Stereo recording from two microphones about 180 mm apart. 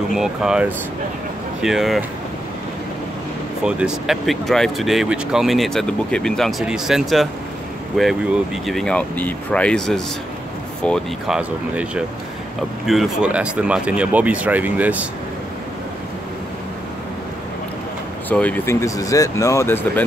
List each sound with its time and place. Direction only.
0.1 s speech: 5° right (ahead or behind)
3.6 s speech: 5° right (ahead or behind)
18.3 s speech: 10° left (ahead or behind)